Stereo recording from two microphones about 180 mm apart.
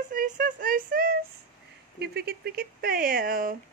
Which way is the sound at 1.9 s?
65° right (ahead or behind).